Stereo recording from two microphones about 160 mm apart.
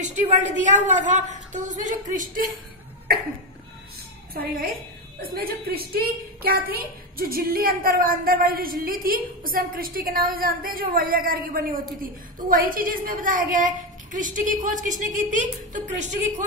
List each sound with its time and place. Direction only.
0.0 s a woman's voice: 50° right (ahead or behind)
4.3 s a woman's voice: 70° right (ahead or behind); by 15.8 s 50° right (ahead or behind)